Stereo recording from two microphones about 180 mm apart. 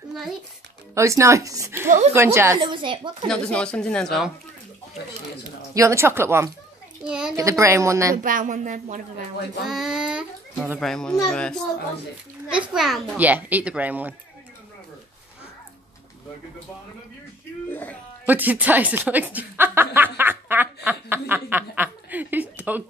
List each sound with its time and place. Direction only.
0.1 s a sound: centre (ahead or behind)
0.9 s a woman's voice: 15° right (ahead or behind)
2.6 s speech: 25° right (ahead or behind)
3.3 s speech: 5° left (ahead or behind)
5.8 s a woman's voice: 15° right (ahead or behind)
7.3 s a woman's voice: 15° right (ahead or behind)
8.2 s speech: 50° right (ahead or behind)
9.7 s a child's voice: centre (ahead or behind)
10.8 s speech: 5° left (ahead or behind)
12.5 s a woman's voice: centre (ahead or behind)
17.6 s speech: 10° left (ahead or behind)
18.2 s a woman's voice: 10° right (ahead or behind)